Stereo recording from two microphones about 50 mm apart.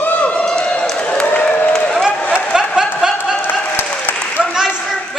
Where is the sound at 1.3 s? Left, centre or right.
Left.